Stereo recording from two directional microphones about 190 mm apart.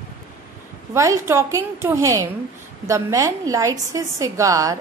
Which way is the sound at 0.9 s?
15° right (ahead or behind).